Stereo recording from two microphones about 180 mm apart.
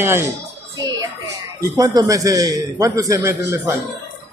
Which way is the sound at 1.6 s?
20° right (ahead or behind).